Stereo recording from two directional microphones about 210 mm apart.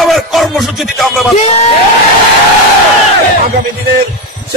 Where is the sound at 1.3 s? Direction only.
30° left (ahead or behind).